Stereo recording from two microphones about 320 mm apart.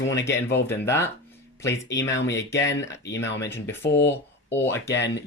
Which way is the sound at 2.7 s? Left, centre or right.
Centre.